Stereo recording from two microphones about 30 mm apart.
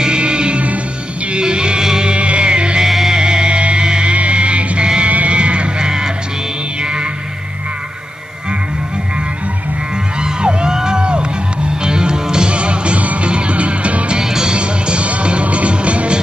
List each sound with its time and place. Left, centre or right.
0.0 s music: right
1.8 s music: centre
2.0 s music: right
3.1 s music: right
3.5 s music: right
3.8 s music: right
4.1 s music: right
5.0 s sheep: right
5.8 s music: right
10.2 s music: right
12.4 s music: right
14.2 s music: centre
14.5 s music: right